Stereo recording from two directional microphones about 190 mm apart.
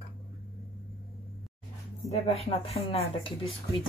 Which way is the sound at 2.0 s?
35° left (ahead or behind).